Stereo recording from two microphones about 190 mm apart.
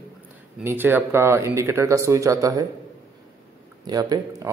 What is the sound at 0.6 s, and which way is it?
Speech, 10° right (ahead or behind).